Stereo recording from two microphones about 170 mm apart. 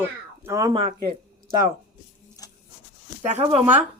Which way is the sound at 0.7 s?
30° right (ahead or behind).